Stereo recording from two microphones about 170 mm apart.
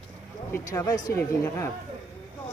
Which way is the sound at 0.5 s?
15° left (ahead or behind).